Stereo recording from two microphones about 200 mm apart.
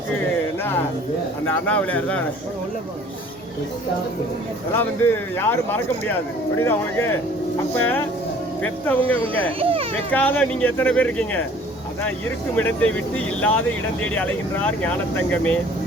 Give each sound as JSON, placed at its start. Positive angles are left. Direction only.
{"t": 1.5, "sound": "speech", "side_deg": 5}
{"t": 4.8, "sound": "speech", "side_deg": 10}
{"t": 9.6, "sound": "speech", "side_deg": -30}
{"t": 10.1, "sound": "speech", "side_deg": 10}
{"t": 12.5, "sound": "speech", "side_deg": 5}